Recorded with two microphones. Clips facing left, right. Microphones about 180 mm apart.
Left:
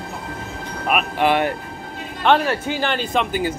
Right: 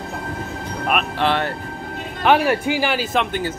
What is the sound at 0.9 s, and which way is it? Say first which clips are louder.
Speech: left 2 dB; 10° left (ahead or behind).